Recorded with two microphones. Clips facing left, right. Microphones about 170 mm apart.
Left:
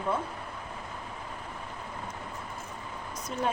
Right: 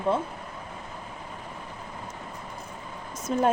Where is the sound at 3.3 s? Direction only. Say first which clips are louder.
Right 8 dB; 40° right (ahead or behind).